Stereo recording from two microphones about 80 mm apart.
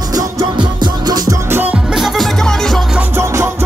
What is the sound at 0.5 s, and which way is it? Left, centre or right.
Music, right.